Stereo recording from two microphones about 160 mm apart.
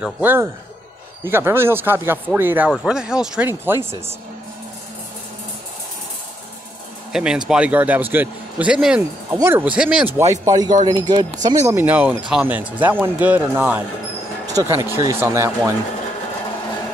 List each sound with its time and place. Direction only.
0.0 s speech: 10° right (ahead or behind)
7.1 s speech: 5° right (ahead or behind); by 11.2 s 25° right (ahead or behind)
11.7 s speech: 10° right (ahead or behind)
14.4 s speech: 20° right (ahead or behind)